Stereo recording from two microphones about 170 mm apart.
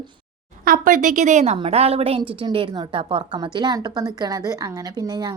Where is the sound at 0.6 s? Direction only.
55° right (ahead or behind).